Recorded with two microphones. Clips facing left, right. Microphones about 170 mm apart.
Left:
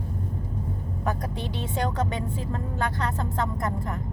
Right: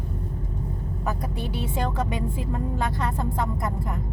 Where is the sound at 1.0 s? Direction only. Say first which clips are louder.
Even; 10° right (ahead or behind).